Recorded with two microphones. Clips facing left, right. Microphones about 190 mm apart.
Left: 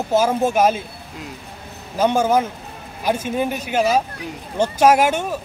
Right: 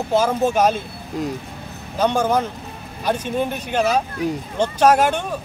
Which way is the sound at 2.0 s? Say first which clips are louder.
Left 2 dB; 10° left (ahead or behind).